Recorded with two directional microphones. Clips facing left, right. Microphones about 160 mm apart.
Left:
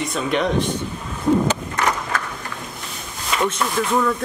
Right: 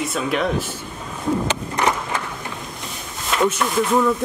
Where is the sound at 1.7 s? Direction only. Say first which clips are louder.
Right 1 dB; 15° right (ahead or behind).